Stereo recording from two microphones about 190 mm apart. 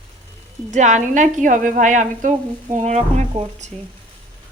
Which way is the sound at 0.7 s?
40° right (ahead or behind).